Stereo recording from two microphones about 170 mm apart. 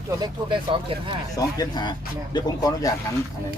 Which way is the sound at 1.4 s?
25° left (ahead or behind).